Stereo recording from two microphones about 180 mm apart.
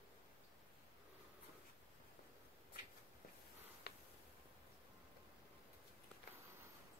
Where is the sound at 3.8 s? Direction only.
65° left (ahead or behind).